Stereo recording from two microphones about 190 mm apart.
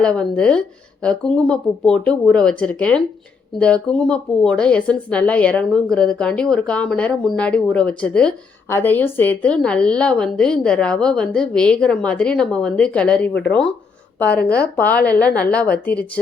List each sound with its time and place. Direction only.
0.0 s a woman's voice: 5° left (ahead or behind)